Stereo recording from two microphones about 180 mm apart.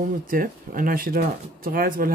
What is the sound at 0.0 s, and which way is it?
Speech, 50° right (ahead or behind).